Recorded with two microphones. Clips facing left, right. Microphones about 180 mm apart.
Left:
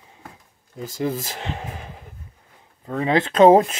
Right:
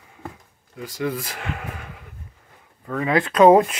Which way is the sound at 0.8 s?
25° left (ahead or behind).